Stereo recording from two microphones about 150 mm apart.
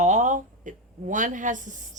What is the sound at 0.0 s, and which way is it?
A woman's voice, 55° right (ahead or behind).